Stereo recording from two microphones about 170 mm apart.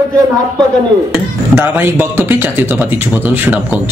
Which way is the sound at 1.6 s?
10° right (ahead or behind).